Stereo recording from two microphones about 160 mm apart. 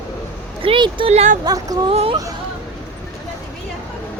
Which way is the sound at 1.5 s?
25° right (ahead or behind).